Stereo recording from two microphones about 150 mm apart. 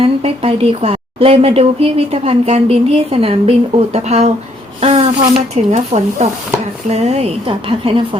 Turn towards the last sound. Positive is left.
turn(degrees=-40)  # may be behind; listen again after turning